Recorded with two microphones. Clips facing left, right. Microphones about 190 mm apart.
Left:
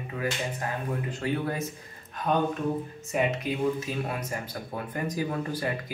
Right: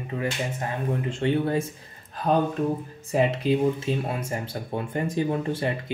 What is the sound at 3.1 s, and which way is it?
Speech, 30° right (ahead or behind).